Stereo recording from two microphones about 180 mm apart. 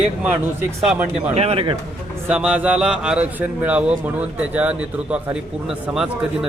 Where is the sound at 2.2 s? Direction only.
5° right (ahead or behind).